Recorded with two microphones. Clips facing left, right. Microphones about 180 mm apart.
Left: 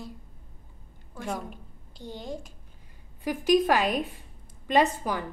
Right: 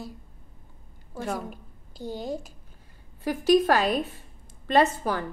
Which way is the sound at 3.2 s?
15° left (ahead or behind).